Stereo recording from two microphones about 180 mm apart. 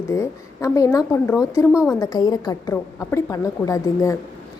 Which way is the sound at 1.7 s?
5° right (ahead or behind).